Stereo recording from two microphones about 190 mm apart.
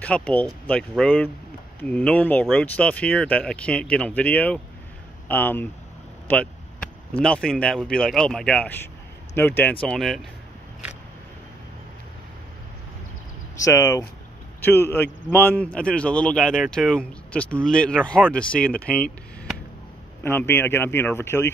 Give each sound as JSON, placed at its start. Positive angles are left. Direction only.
{"t": 0.0, "sound": "a man's voice", "side_deg": 5}
{"t": 13.7, "sound": "a man's voice", "side_deg": 20}
{"t": 18.9, "sound": "a sound", "side_deg": 5}
{"t": 20.2, "sound": "speech", "side_deg": 10}